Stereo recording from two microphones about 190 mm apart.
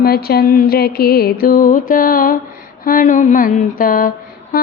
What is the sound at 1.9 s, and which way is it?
Music, 45° left (ahead or behind).